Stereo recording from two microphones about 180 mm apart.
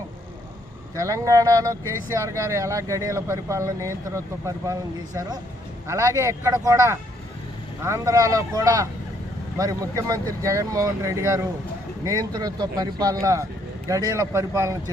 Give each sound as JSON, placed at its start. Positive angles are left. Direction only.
{"t": 0.9, "sound": "speech", "side_deg": -15}